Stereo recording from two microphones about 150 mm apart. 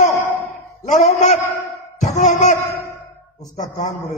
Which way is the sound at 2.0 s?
55° left (ahead or behind).